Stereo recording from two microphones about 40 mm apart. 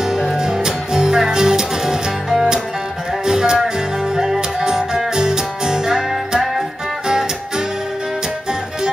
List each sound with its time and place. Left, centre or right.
0.0 s music: centre